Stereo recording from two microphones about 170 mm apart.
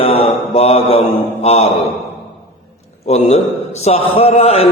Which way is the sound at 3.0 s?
40° left (ahead or behind).